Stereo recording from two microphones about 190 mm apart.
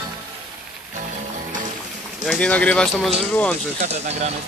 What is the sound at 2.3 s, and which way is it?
Speech, 5° left (ahead or behind).